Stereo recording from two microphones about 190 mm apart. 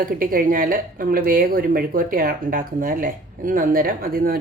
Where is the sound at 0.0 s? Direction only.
50° right (ahead or behind).